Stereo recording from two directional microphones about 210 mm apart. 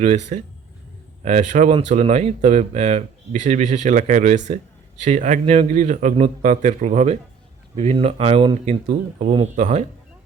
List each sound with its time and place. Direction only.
0.0 s speech: 35° right (ahead or behind)